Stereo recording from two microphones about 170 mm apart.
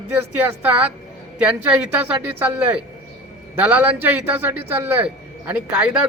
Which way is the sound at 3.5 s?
10° right (ahead or behind).